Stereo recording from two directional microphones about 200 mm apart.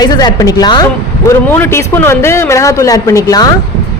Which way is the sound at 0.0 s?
20° left (ahead or behind).